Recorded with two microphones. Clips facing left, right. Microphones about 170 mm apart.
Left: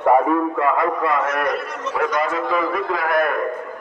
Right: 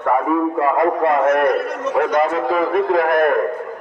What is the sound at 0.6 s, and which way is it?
A man's voice, 45° right (ahead or behind).